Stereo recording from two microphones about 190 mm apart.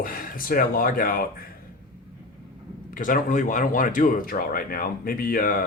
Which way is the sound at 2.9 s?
45° left (ahead or behind).